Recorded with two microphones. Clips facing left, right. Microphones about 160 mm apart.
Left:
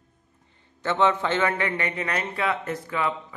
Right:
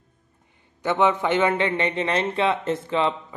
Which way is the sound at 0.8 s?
15° right (ahead or behind).